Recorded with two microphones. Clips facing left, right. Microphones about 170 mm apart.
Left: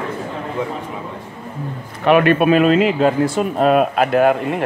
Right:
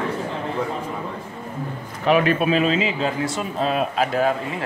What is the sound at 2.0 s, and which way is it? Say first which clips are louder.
Speech: left 5 dB; 60° left (ahead or behind).